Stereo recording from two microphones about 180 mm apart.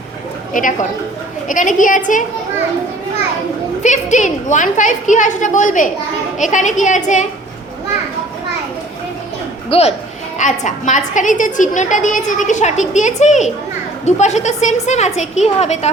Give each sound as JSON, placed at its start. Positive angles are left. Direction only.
{"t": 0.5, "sound": "a woman's voice", "side_deg": 45}
{"t": 3.8, "sound": "a woman's voice", "side_deg": 40}
{"t": 9.6, "sound": "a woman's voice", "side_deg": 35}